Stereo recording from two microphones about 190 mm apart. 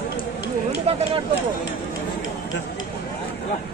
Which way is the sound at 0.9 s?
35° right (ahead or behind).